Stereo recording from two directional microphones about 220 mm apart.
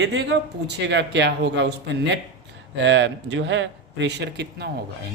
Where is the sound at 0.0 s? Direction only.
50° right (ahead or behind).